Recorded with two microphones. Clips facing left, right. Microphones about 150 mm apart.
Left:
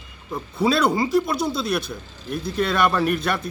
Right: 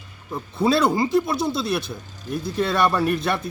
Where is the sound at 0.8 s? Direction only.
Centre (ahead or behind).